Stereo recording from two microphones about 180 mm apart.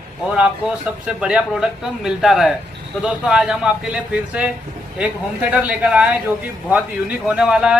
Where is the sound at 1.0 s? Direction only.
5° right (ahead or behind).